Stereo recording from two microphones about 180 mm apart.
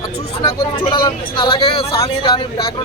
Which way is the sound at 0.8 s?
30° left (ahead or behind).